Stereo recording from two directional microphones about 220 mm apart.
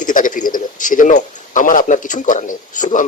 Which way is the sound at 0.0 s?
35° left (ahead or behind).